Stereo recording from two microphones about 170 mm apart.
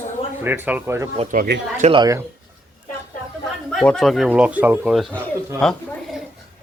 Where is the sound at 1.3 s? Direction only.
55° right (ahead or behind).